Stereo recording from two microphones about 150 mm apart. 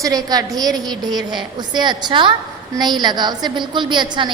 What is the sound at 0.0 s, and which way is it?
A woman's voice, 25° right (ahead or behind).